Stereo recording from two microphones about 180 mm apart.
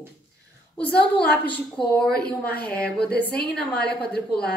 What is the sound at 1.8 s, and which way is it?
Speech, 5° left (ahead or behind).